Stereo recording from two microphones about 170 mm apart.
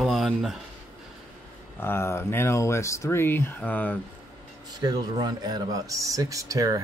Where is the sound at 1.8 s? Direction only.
15° left (ahead or behind).